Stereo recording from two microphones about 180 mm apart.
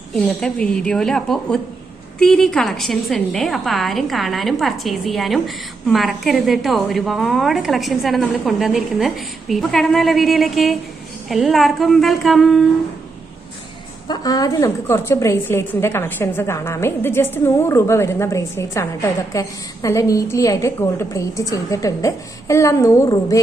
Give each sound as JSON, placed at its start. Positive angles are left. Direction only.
{"t": 0.1, "sound": "a woman's voice", "side_deg": 5}
{"t": 14.1, "sound": "a woman's voice", "side_deg": 20}